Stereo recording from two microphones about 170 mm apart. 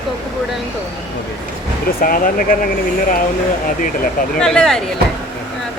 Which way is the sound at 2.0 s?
55° left (ahead or behind).